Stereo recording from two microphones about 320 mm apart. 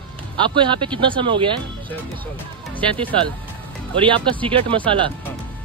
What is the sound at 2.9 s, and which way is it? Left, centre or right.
Speech, centre.